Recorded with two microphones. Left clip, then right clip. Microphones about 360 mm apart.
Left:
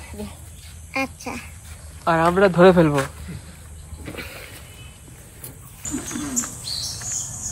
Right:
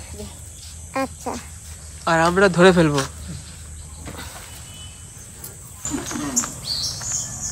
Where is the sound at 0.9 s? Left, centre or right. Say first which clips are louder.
Right 1 dB; centre.